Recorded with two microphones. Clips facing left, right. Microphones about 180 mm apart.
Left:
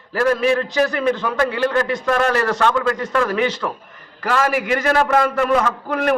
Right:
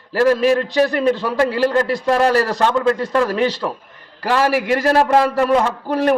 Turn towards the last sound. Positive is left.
turn(degrees=-35)  # may be behind; listen again after turning